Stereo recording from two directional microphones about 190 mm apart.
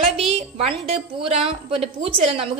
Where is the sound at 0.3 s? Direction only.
30° right (ahead or behind).